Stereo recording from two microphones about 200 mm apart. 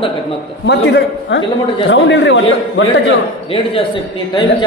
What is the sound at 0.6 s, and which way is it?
Speech, 60° left (ahead or behind).